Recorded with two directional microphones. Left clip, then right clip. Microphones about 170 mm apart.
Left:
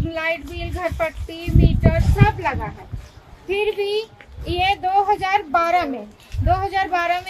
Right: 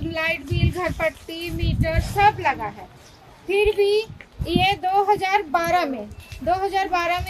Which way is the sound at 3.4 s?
30° right (ahead or behind).